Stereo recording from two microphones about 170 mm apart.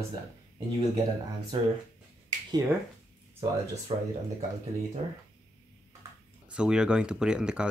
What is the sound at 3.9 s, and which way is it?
Speech, 35° right (ahead or behind).